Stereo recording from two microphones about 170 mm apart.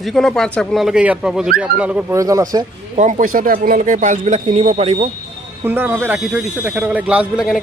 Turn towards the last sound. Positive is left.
turn(degrees=-5)  # may be behind; listen again after turning